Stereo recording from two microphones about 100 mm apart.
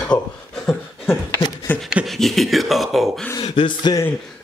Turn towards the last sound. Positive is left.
turn(degrees=55)  # may be behind; listen again after turning